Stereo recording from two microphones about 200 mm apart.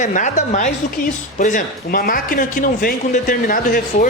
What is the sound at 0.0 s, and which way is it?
Speech, 40° left (ahead or behind).